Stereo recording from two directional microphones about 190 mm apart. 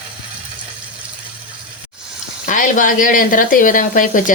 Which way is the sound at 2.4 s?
45° left (ahead or behind).